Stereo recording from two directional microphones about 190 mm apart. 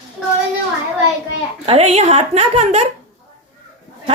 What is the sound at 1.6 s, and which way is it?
Speech, 30° right (ahead or behind).